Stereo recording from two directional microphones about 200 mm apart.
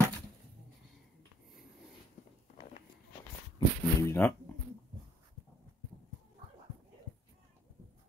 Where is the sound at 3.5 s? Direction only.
15° left (ahead or behind).